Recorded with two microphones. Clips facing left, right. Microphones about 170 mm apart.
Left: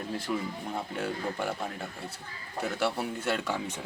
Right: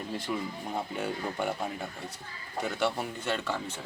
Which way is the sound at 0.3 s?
Centre (ahead or behind).